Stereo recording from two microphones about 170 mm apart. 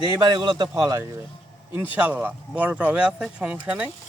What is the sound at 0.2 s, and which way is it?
Speech, 25° right (ahead or behind).